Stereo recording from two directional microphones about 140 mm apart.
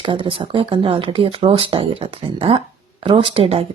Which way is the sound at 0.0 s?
35° right (ahead or behind).